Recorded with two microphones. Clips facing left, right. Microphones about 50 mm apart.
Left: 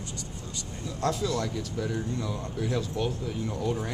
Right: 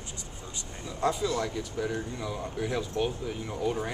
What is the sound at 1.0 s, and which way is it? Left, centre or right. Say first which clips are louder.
Speech: even; centre.